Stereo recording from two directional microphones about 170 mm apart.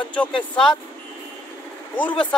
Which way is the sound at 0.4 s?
5° left (ahead or behind).